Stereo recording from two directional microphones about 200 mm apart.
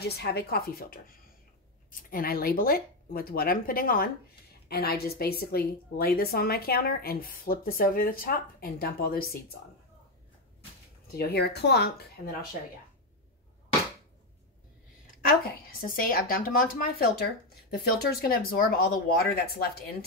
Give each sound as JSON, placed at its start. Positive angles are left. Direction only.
{"t": 0.0, "sound": "a woman's voice", "side_deg": 55}
{"t": 11.1, "sound": "a woman's voice", "side_deg": 55}
{"t": 15.8, "sound": "a woman's voice", "side_deg": 45}